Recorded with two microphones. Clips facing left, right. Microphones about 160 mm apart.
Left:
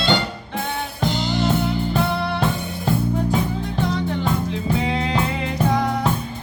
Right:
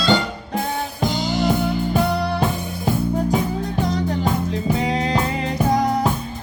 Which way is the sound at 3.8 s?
40° right (ahead or behind).